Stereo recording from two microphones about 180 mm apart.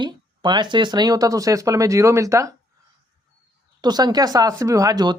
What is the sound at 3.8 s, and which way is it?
Speech, 25° right (ahead or behind).